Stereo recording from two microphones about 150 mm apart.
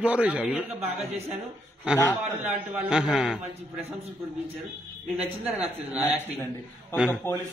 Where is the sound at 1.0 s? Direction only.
45° right (ahead or behind).